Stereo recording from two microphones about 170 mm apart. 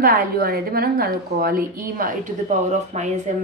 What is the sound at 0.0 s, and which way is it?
A woman's voice, 60° right (ahead or behind).